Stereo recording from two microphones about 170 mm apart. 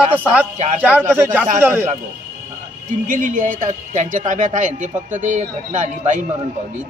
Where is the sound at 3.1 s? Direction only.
50° right (ahead or behind).